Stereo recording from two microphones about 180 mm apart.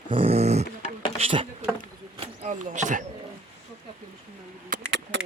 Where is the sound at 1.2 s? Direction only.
30° right (ahead or behind).